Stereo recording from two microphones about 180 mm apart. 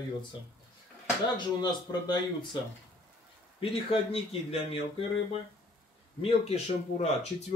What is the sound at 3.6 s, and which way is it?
Speech, 30° left (ahead or behind).